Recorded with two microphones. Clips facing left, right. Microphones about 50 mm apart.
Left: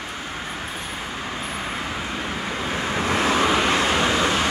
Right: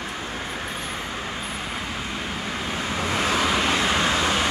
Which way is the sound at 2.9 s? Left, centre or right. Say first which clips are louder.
Left 3 dB; left.